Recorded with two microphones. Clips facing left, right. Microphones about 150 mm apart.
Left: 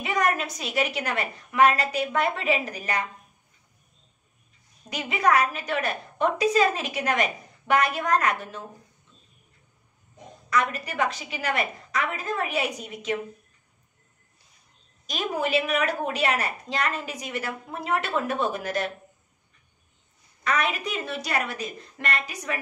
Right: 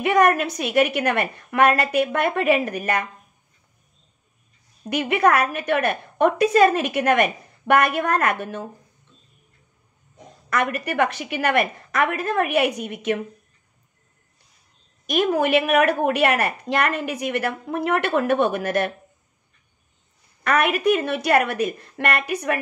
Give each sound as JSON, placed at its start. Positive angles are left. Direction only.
{"t": 0.0, "sound": "a woman's voice", "side_deg": -60}
{"t": 4.8, "sound": "a woman's voice", "side_deg": -60}
{"t": 10.5, "sound": "a woman's voice", "side_deg": -60}
{"t": 15.0, "sound": "a woman's voice", "side_deg": -60}
{"t": 20.4, "sound": "a woman's voice", "side_deg": -60}